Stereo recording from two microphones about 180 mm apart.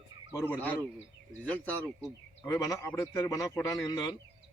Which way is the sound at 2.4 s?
20° left (ahead or behind).